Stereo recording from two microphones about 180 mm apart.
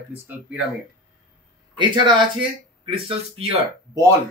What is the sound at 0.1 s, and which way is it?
Speech, 10° right (ahead or behind).